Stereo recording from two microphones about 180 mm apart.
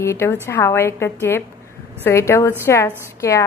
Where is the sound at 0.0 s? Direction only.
15° left (ahead or behind).